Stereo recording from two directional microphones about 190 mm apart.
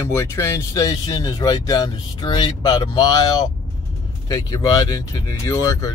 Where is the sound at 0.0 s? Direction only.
15° left (ahead or behind).